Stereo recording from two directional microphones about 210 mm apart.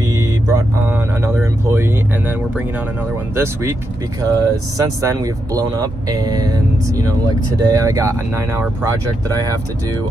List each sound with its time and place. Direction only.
0.1 s speech: 15° right (ahead or behind)
4.2 s speech: 15° right (ahead or behind)